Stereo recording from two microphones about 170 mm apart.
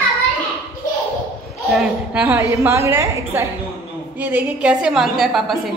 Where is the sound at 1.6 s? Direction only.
Centre (ahead or behind).